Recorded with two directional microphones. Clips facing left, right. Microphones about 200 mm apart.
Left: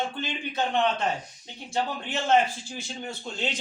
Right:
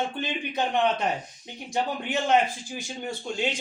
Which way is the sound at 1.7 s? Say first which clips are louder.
Right 2 dB; 15° right (ahead or behind).